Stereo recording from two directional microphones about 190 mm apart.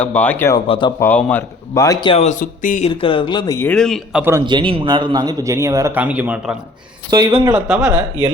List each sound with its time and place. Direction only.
0.0 s speech: 5° left (ahead or behind)
0.7 s speech: 25° left (ahead or behind)
1.0 s speech: 10° left (ahead or behind); by 2.9 s 40° left (ahead or behind)
2.9 s speech: 30° left (ahead or behind)
3.7 s a man's voice: 5° left (ahead or behind)
4.2 s a man's voice: 15° right (ahead or behind)
4.4 s a man's voice: 25° right (ahead or behind); by 6.6 s 5° right (ahead or behind)
7.1 s speech: 20° right (ahead or behind)
7.5 s a man's voice: centre (ahead or behind)